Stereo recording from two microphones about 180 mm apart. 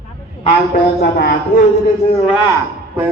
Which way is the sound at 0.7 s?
65° left (ahead or behind).